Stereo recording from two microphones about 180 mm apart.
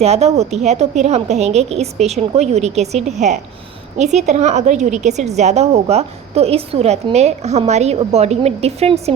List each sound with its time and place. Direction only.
0.0 s a woman's voice: 35° right (ahead or behind)